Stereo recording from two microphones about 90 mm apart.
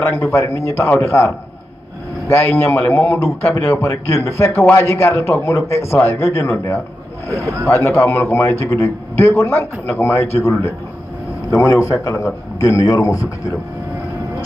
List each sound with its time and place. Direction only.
0.0 s a man's voice: 30° left (ahead or behind)
7.8 s a man's voice: 30° left (ahead or behind)